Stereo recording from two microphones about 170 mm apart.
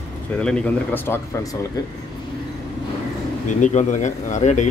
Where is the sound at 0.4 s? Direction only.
5° left (ahead or behind).